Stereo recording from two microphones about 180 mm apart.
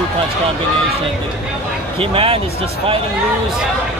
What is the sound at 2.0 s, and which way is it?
Speech, 30° right (ahead or behind).